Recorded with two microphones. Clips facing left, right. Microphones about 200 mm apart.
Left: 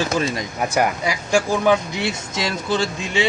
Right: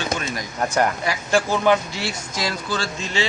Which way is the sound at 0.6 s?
10° left (ahead or behind).